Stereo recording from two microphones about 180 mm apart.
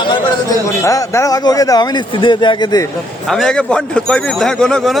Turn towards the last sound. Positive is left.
turn(degrees=0)  # may be behind; listen again after turning